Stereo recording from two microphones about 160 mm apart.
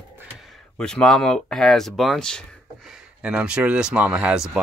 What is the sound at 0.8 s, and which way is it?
Speech, 5° left (ahead or behind).